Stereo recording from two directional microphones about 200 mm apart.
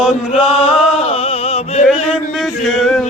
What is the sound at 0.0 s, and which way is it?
Chant, 5° right (ahead or behind).